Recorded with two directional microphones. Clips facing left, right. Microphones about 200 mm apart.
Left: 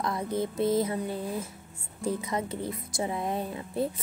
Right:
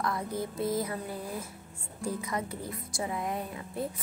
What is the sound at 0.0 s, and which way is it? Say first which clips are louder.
Speech: left 3 dB; 20° left (ahead or behind).